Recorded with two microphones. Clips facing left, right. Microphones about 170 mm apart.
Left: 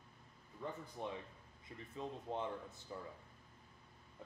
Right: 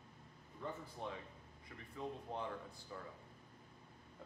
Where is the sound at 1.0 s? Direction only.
15° left (ahead or behind).